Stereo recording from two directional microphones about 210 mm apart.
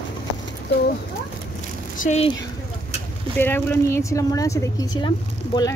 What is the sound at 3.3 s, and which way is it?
Speech, 10° left (ahead or behind).